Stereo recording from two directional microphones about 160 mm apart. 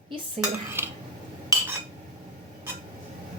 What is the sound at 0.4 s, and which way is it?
Dishes, 15° right (ahead or behind).